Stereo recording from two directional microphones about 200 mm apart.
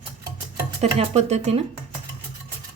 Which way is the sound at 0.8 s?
35° right (ahead or behind).